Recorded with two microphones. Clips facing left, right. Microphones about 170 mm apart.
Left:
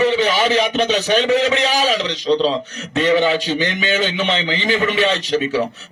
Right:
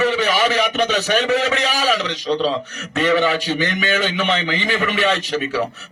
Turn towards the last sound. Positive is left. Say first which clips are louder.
# left 2 dB
turn(degrees=30)  # may be behind; listen again after turning